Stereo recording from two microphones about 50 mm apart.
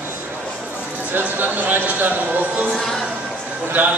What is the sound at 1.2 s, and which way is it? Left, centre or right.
Speech, right.